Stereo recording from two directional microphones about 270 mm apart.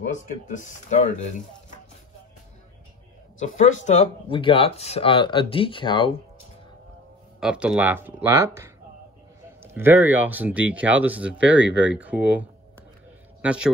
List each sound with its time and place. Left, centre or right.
0.1 s speech: left
3.3 s speech: left
7.3 s a man's voice: centre